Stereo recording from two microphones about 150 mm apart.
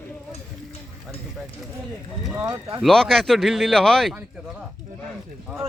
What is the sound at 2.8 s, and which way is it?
Speech, centre (ahead or behind).